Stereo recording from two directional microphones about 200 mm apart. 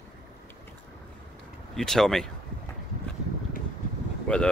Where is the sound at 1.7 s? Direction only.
Centre (ahead or behind).